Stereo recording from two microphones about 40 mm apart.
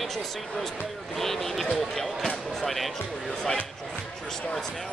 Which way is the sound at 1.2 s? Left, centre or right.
Centre.